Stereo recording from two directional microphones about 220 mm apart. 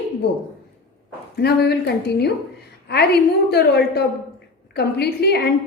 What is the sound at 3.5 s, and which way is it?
A woman's voice, 45° left (ahead or behind).